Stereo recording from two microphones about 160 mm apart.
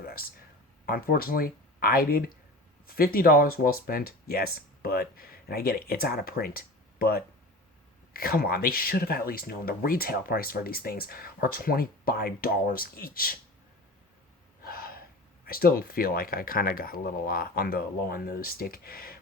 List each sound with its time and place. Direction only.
0.0 s a sound: 65° left (ahead or behind)
0.9 s speech: 65° left (ahead or behind)
14.6 s gasp: 70° left (ahead or behind)
15.4 s speech: 65° left (ahead or behind)